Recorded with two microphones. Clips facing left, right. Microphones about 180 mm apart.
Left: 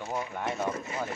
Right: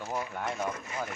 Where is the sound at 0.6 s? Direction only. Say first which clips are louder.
Left 3 dB; 30° left (ahead or behind).